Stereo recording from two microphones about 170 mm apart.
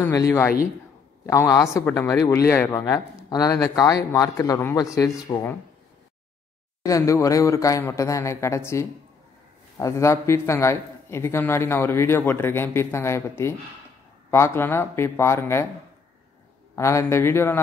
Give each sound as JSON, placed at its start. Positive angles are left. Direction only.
{"t": 0.0, "sound": "a man's voice", "side_deg": 15}
{"t": 6.8, "sound": "a man's voice", "side_deg": 20}
{"t": 16.7, "sound": "a man's voice", "side_deg": 15}